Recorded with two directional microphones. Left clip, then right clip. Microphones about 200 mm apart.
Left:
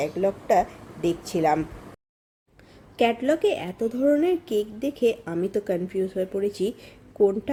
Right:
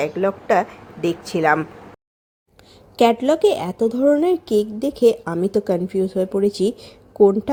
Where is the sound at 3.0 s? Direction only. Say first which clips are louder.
Right 6 dB; 35° right (ahead or behind).